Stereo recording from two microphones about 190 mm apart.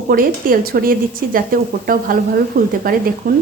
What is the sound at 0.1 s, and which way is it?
A woman's voice, 50° right (ahead or behind).